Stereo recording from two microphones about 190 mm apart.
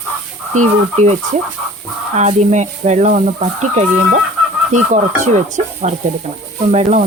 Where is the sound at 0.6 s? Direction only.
35° right (ahead or behind).